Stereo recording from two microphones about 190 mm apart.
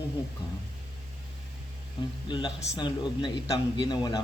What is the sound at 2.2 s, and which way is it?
A man's voice, 25° left (ahead or behind).